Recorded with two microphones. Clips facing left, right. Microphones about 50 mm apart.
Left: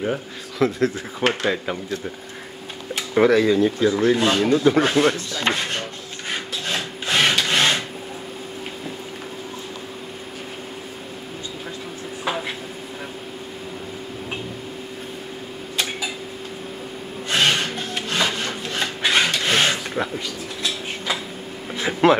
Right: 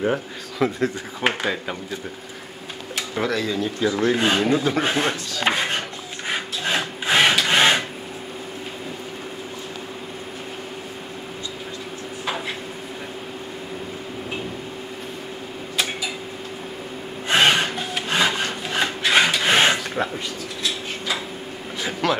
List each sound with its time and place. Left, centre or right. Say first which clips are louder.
0.0 s speech: right 2 dB; centre
3.2 s speech: left 8 dB; left
3.8 s speech: left 2 dB; centre
4.1 s speech: left 1 dB; centre
5.4 s wood: right 2 dB; centre
17.3 s music: right 3 dB; centre
18.1 s rub: right 2 dB; centre
19.1 s a sound: right 3 dB; centre
22.0 s a sound: left 7 dB; left